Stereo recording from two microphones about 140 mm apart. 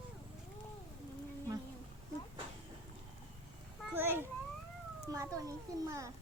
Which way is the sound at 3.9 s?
15° right (ahead or behind).